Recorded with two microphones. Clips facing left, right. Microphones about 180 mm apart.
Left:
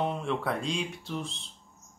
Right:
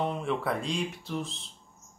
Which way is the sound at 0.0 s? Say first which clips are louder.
Even; centre (ahead or behind).